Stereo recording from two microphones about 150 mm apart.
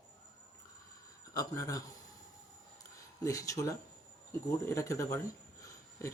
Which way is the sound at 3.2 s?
20° left (ahead or behind).